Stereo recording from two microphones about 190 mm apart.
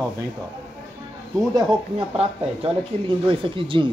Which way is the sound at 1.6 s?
25° right (ahead or behind).